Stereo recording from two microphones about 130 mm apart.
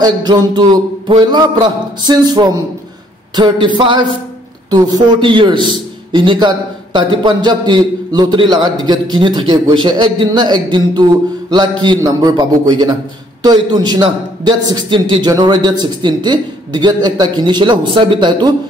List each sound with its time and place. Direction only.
0.0 s a man's voice: 35° right (ahead or behind)